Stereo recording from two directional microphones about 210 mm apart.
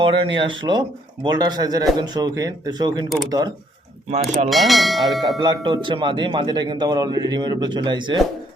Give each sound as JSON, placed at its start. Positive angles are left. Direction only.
{"t": 0.0, "sound": "speech", "side_deg": -25}
{"t": 4.4, "sound": "speech", "side_deg": 0}
{"t": 5.4, "sound": "speech", "side_deg": -20}